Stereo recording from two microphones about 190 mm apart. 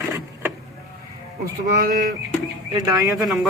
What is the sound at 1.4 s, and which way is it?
Speech, 50° right (ahead or behind).